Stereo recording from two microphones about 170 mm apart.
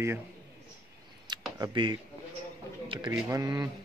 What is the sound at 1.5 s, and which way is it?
Speech, 25° right (ahead or behind).